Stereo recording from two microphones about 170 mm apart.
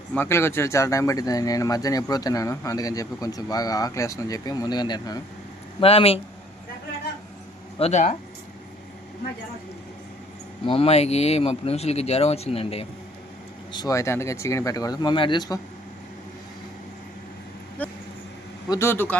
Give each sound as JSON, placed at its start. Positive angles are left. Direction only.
{"t": 0.1, "sound": "speech", "side_deg": 15}
{"t": 5.8, "sound": "speech", "side_deg": 35}
{"t": 7.8, "sound": "speech", "side_deg": 40}
{"t": 10.7, "sound": "speech", "side_deg": 35}
{"t": 13.7, "sound": "speech", "side_deg": 20}
{"t": 17.8, "sound": "speech", "side_deg": 10}